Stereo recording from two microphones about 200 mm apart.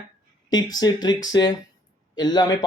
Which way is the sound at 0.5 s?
20° left (ahead or behind).